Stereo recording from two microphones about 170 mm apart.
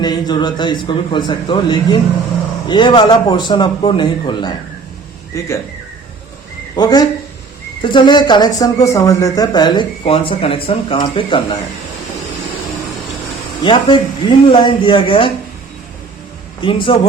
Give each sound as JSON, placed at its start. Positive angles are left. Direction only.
{"t": 0.0, "sound": "speech", "side_deg": 25}
{"t": 6.7, "sound": "speech", "side_deg": 25}
{"t": 13.7, "sound": "speech", "side_deg": 30}
{"t": 16.6, "sound": "speech", "side_deg": 30}